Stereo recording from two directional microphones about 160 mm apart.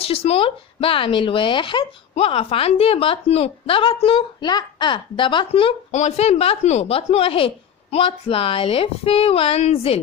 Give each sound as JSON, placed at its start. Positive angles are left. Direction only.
{"t": 0.0, "sound": "speech", "side_deg": 40}